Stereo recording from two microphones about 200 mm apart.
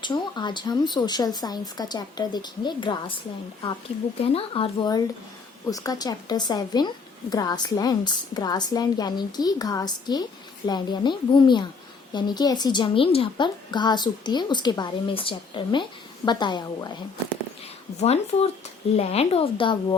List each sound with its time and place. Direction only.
0.0 s a woman's voice: 25° left (ahead or behind)
4.2 s a woman's voice: 30° left (ahead or behind)
18.0 s a woman's voice: 30° left (ahead or behind)